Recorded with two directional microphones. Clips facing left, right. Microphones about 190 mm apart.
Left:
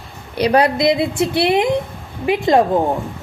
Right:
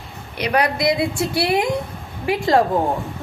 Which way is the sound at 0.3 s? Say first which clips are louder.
Left 5 dB; 30° left (ahead or behind).